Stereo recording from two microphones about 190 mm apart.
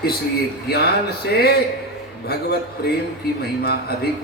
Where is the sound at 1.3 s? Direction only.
55° left (ahead or behind).